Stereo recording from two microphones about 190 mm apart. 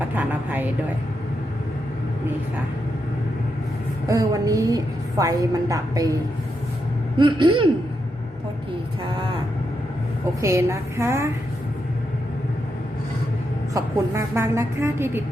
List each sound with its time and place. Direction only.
0.2 s a sound: 10° right (ahead or behind)
4.1 s a woman's voice: 15° right (ahead or behind)
7.2 s speech: 25° right (ahead or behind)
10.4 s a woman's voice: 15° right (ahead or behind)
13.7 s a woman's voice: 15° right (ahead or behind)